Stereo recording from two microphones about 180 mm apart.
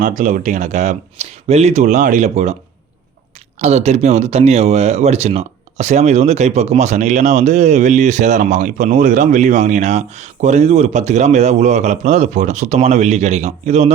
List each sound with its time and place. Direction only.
0.0 s speech: 45° right (ahead or behind)
3.6 s speech: 35° right (ahead or behind)